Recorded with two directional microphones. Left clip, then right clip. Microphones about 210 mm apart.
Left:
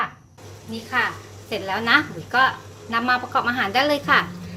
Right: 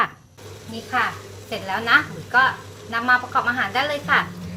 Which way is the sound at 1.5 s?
30° left (ahead or behind).